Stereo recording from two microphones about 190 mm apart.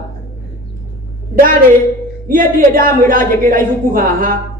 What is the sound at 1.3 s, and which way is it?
A woman's voice, 50° right (ahead or behind).